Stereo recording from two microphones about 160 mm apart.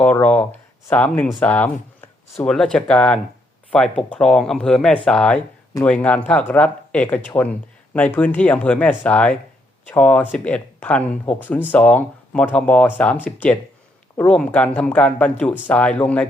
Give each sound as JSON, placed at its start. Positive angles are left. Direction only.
{"t": 0.0, "sound": "speech", "side_deg": 10}